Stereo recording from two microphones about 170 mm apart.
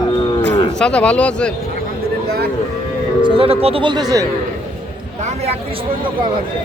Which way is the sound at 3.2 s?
35° right (ahead or behind).